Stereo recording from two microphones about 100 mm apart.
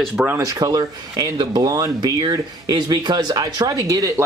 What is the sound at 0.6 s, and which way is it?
Speech, 40° right (ahead or behind).